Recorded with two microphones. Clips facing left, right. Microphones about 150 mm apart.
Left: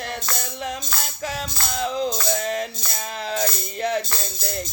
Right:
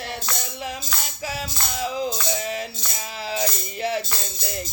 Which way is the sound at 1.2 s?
5° right (ahead or behind).